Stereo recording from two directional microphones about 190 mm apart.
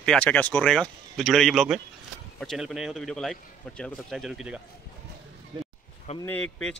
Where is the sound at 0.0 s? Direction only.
5° left (ahead or behind).